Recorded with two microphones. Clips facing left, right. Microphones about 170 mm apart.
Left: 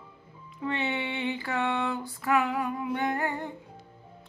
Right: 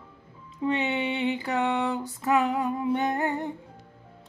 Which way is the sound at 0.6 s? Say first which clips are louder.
Right 4 dB; 20° right (ahead or behind).